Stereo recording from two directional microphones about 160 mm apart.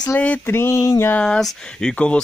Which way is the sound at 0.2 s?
10° left (ahead or behind).